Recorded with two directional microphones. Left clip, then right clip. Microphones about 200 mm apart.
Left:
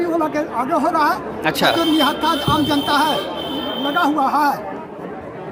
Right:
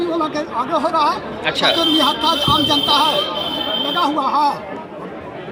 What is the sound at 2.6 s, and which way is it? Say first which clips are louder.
Speech: right 2 dB; 15° left (ahead or behind).